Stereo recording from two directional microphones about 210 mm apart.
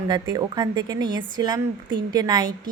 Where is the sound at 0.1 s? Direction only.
20° right (ahead or behind).